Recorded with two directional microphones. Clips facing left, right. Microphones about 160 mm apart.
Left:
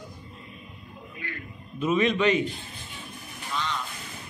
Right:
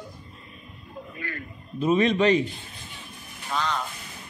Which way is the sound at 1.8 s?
35° right (ahead or behind).